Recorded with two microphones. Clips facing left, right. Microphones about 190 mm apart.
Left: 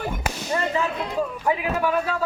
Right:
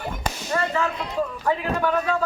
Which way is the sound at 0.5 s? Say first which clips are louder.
Even; 20° left (ahead or behind).